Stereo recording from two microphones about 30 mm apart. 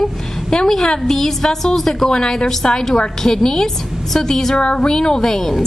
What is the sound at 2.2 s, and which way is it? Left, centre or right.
A woman's voice, left.